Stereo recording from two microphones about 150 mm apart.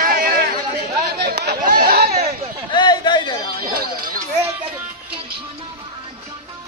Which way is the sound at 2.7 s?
30° left (ahead or behind).